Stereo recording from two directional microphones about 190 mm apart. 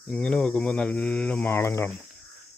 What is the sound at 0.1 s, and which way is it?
Speech, 5° left (ahead or behind).